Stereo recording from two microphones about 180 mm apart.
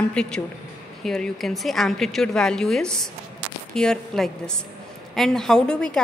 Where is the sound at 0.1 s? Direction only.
5° left (ahead or behind).